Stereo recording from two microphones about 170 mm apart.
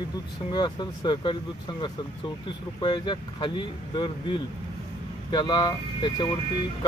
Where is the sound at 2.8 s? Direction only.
25° left (ahead or behind).